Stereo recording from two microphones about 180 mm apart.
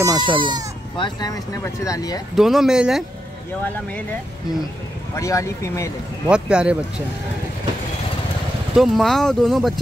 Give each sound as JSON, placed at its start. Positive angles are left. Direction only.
{"t": 0.0, "sound": "speech", "side_deg": -25}
{"t": 0.9, "sound": "speech", "side_deg": 25}
{"t": 2.3, "sound": "speech", "side_deg": 0}
{"t": 5.1, "sound": "speech", "side_deg": 15}
{"t": 6.3, "sound": "speech", "side_deg": -5}
{"t": 8.7, "sound": "speech", "side_deg": 0}